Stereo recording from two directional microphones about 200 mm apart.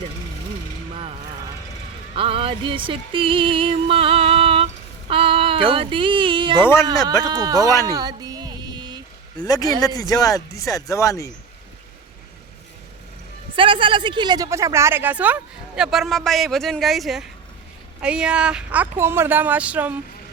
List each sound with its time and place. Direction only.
2.1 s music: 25° right (ahead or behind)
6.6 s speech: 10° left (ahead or behind)
7.3 s speech: 20° right (ahead or behind)
7.9 s a sound: 20° right (ahead or behind)
9.4 s speech: 20° left (ahead or behind)
13.6 s speech: 25° right (ahead or behind); by 20.0 s 10° right (ahead or behind)